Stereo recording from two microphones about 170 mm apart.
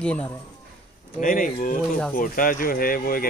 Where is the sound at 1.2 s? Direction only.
55° left (ahead or behind).